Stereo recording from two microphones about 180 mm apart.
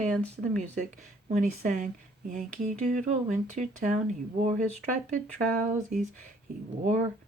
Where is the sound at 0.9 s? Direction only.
45° right (ahead or behind).